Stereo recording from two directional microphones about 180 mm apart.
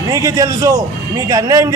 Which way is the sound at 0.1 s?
20° right (ahead or behind).